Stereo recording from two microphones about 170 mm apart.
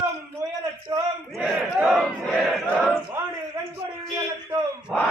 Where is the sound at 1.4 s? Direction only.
5° right (ahead or behind).